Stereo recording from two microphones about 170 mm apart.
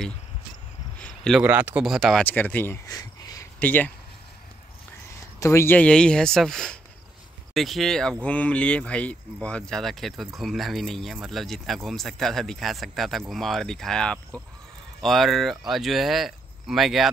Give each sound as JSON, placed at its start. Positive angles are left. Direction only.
{"t": 1.0, "sound": "a sound", "side_deg": 5}
{"t": 1.4, "sound": "speech", "side_deg": -10}
{"t": 2.2, "sound": "speech", "side_deg": 10}
{"t": 3.5, "sound": "speech", "side_deg": 10}
{"t": 5.1, "sound": "speech", "side_deg": 15}